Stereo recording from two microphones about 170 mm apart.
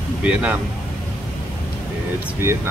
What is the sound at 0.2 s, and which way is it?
Speech, 10° right (ahead or behind).